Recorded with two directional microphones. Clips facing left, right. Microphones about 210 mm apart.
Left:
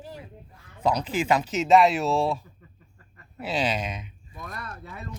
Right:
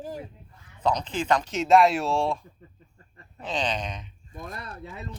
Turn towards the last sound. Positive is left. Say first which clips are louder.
# right 1 dB
turn(degrees=-30)  # may be behind; listen again after turning